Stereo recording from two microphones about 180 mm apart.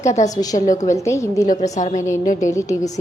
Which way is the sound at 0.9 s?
15° left (ahead or behind).